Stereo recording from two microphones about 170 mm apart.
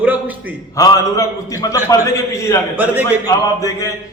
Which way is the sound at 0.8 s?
20° left (ahead or behind).